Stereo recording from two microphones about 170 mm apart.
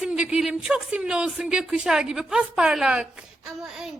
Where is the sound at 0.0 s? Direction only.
5° right (ahead or behind).